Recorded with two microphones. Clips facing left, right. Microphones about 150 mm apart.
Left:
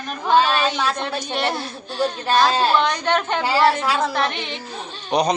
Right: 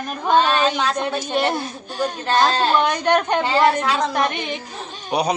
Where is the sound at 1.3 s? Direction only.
10° right (ahead or behind).